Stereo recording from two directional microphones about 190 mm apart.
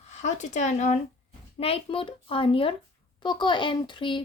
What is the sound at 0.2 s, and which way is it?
Speech, 40° left (ahead or behind).